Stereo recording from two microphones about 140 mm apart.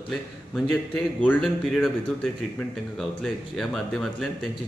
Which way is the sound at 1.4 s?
Centre (ahead or behind).